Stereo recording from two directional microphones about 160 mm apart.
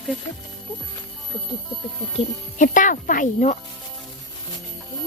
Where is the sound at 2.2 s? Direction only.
55° left (ahead or behind).